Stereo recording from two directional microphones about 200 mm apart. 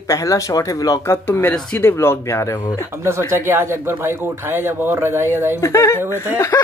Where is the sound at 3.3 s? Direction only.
10° right (ahead or behind).